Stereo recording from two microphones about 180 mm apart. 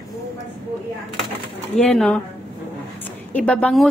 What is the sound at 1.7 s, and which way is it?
Speech, 5° left (ahead or behind).